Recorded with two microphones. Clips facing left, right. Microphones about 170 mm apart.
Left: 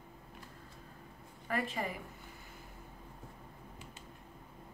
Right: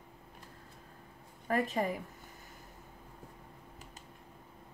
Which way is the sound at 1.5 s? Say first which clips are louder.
Right 5 dB; 45° right (ahead or behind).